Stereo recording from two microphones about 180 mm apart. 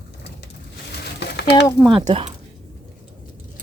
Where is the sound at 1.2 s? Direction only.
65° left (ahead or behind).